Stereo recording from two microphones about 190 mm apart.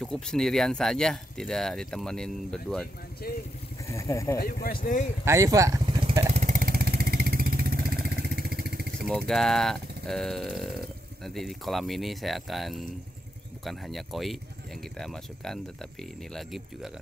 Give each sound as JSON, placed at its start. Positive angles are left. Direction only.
{"t": 0.0, "sound": "speech", "side_deg": 0}
{"t": 3.2, "sound": "speech", "side_deg": 50}
{"t": 3.8, "sound": "speech", "side_deg": 15}
{"t": 4.6, "sound": "speech", "side_deg": 45}
{"t": 5.2, "sound": "vehicle", "side_deg": -15}
{"t": 9.3, "sound": "speech", "side_deg": 0}